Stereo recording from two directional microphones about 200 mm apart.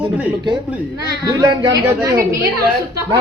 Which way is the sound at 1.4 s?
20° right (ahead or behind).